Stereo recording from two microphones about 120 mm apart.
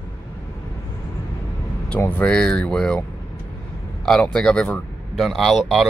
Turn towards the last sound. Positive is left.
turn(degrees=0)  # may be behind; listen again after turning